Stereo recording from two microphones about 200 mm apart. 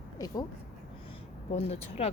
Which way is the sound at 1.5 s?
30° left (ahead or behind).